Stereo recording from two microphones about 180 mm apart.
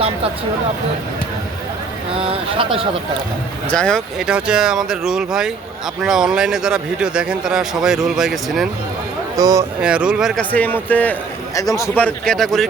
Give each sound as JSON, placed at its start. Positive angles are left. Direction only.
{"t": 2.2, "sound": "speech", "side_deg": -30}
{"t": 3.7, "sound": "speech", "side_deg": 5}
{"t": 9.3, "sound": "speech", "side_deg": -20}
{"t": 9.8, "sound": "speech", "side_deg": -5}
{"t": 10.5, "sound": "a man's voice", "side_deg": 10}